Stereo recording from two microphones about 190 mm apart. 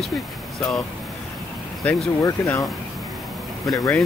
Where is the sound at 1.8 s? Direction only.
15° left (ahead or behind).